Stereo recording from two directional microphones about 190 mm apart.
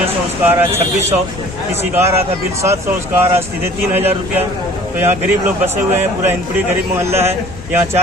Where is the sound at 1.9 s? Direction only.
15° right (ahead or behind).